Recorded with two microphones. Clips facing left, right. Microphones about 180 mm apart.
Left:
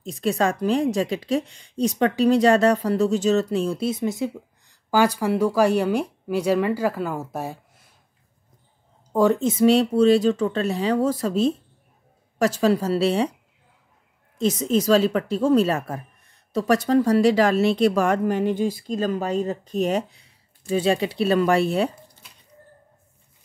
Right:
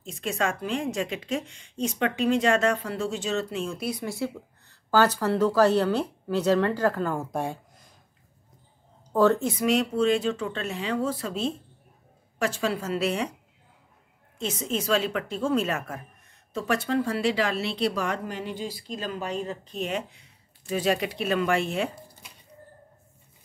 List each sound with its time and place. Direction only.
0.0 s a woman's voice: 35° left (ahead or behind); by 7.2 s 10° left (ahead or behind)
9.1 s a woman's voice: 15° left (ahead or behind); by 13.3 s 30° left (ahead or behind)
14.4 s a woman's voice: 40° left (ahead or behind)